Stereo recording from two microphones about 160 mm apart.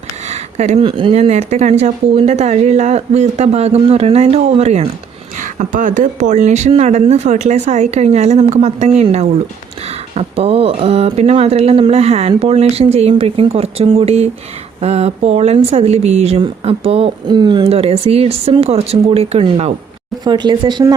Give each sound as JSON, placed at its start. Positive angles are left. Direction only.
{"t": 0.3, "sound": "speech", "side_deg": -45}
{"t": 5.4, "sound": "speech", "side_deg": -55}
{"t": 20.2, "sound": "speech", "side_deg": -25}